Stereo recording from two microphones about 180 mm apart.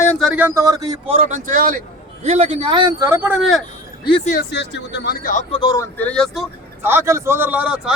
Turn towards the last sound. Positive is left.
turn(degrees=-5)  # may be behind; listen again after turning